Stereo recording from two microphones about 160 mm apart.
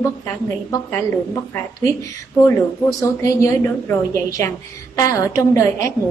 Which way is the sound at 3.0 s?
20° left (ahead or behind).